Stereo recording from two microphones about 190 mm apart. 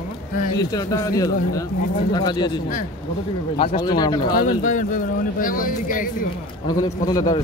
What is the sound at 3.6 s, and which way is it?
Speech, 25° left (ahead or behind).